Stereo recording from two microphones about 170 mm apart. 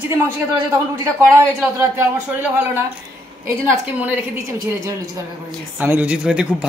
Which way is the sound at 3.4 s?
15° right (ahead or behind).